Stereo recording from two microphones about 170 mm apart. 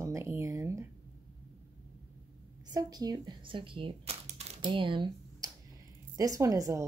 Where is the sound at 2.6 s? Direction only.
20° right (ahead or behind).